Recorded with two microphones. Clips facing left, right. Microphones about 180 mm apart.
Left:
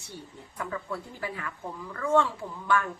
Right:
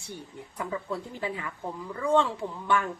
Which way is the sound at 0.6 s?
20° right (ahead or behind).